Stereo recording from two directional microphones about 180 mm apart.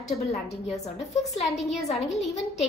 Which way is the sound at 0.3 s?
35° left (ahead or behind).